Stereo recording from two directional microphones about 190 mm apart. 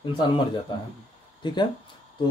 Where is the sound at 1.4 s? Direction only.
25° left (ahead or behind).